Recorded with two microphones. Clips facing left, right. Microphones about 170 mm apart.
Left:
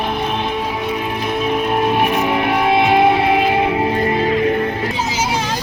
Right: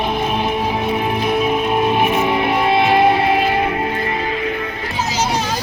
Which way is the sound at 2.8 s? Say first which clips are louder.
Even; 15° left (ahead or behind).